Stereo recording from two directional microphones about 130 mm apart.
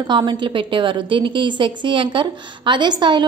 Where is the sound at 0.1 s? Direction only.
35° right (ahead or behind).